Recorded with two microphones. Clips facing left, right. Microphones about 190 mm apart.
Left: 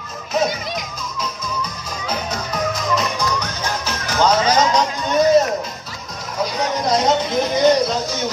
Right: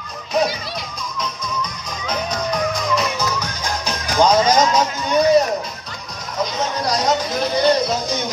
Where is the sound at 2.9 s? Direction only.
5° right (ahead or behind).